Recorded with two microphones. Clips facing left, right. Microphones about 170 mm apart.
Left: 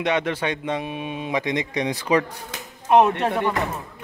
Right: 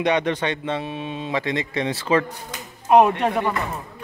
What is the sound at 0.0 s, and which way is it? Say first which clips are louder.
A man's voice: right 2 dB; centre (ahead or behind).